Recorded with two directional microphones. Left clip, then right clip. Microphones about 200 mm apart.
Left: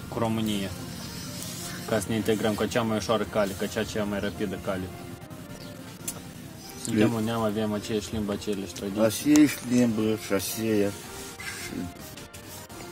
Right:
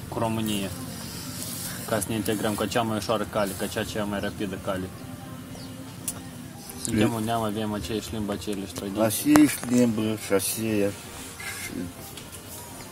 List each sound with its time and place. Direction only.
0.1 s speech: 20° left (ahead or behind)
1.9 s speech: 20° left (ahead or behind)
6.9 s speech: centre (ahead or behind)
7.2 s speech: 25° left (ahead or behind)
8.9 s speech: centre (ahead or behind)